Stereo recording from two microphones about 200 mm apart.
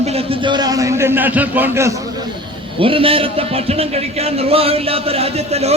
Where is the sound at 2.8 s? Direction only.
25° right (ahead or behind).